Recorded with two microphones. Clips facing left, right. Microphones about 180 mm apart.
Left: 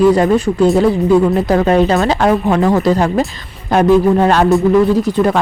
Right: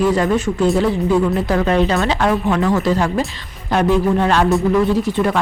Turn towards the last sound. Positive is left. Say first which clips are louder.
# left 4 dB
turn(degrees=40)  # may be behind; listen again after turning